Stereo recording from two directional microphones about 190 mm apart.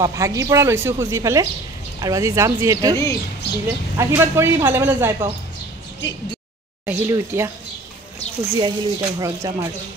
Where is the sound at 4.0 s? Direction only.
15° right (ahead or behind).